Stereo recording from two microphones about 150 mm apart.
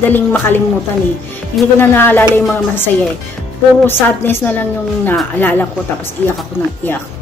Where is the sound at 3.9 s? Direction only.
15° left (ahead or behind).